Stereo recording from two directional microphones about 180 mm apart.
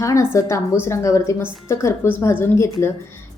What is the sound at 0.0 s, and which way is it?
A woman's voice, 15° left (ahead or behind).